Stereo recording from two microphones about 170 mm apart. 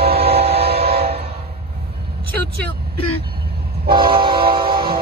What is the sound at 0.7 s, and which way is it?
Train, 65° right (ahead or behind).